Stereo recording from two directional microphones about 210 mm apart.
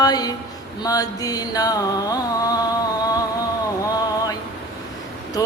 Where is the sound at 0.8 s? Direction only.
15° left (ahead or behind).